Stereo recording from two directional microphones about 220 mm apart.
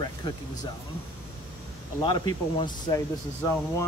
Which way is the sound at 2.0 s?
20° left (ahead or behind).